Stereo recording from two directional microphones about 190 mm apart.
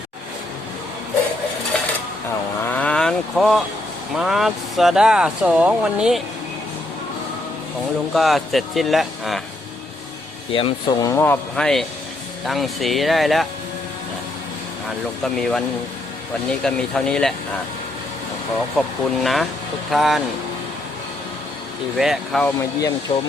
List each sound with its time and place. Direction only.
1.7 s dishes: 5° left (ahead or behind)
2.6 s vehicle: 10° left (ahead or behind)
4.2 s speech: centre (ahead or behind)
8.1 s speech: centre (ahead or behind)
10.5 s speech: 25° left (ahead or behind); by 13.5 s centre (ahead or behind)
15.2 s speech: 5° left (ahead or behind)
18.8 s speech: centre (ahead or behind)
21.9 s speech: centre (ahead or behind)
23.1 s speech: 25° left (ahead or behind)